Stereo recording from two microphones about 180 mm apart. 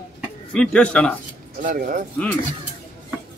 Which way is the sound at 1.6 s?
50° right (ahead or behind).